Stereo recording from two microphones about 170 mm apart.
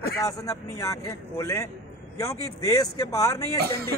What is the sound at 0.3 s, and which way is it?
A man's voice, 20° left (ahead or behind).